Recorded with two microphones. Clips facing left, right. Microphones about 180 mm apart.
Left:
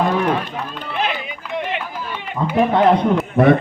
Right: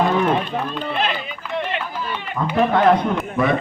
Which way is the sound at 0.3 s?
10° left (ahead or behind).